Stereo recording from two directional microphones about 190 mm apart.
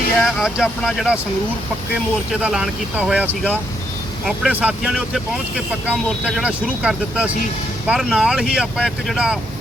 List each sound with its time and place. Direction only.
0.2 s speech: centre (ahead or behind)
2.3 s speech: 5° right (ahead or behind)